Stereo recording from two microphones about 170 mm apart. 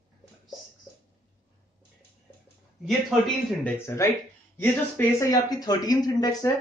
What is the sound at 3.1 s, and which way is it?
Speech, centre (ahead or behind).